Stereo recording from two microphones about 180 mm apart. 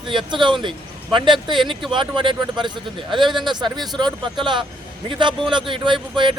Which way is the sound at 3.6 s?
25° right (ahead or behind).